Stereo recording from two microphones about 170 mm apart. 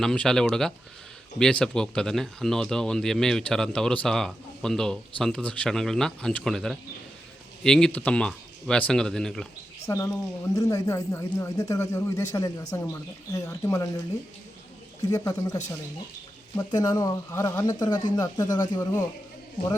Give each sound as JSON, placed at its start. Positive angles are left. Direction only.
{"t": 0.0, "sound": "speech", "side_deg": 5}
{"t": 9.8, "sound": "speech", "side_deg": 20}
{"t": 15.0, "sound": "speech", "side_deg": 20}
{"t": 16.6, "sound": "speech", "side_deg": 20}